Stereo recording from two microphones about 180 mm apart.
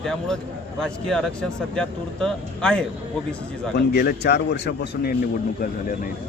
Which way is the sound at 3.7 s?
65° left (ahead or behind).